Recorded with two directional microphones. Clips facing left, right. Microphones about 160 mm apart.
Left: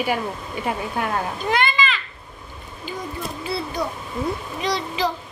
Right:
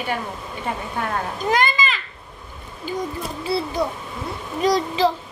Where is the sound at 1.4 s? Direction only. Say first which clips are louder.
Right 2 dB; 40° right (ahead or behind).